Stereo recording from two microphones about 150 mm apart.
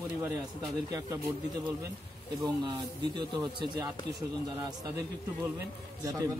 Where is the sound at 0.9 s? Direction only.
20° right (ahead or behind).